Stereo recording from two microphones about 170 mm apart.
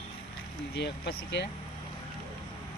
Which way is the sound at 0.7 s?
80° left.